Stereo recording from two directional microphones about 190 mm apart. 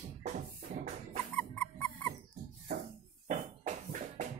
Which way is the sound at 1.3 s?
5° left (ahead or behind).